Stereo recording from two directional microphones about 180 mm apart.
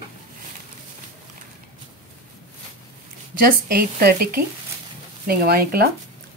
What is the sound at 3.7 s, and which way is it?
Speech, 55° right (ahead or behind).